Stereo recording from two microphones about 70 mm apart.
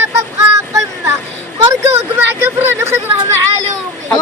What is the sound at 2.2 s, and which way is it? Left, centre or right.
Speech, right.